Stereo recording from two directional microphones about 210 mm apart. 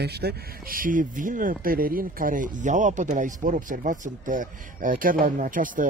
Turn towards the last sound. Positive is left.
turn(degrees=-40)  # may be behind; listen again after turning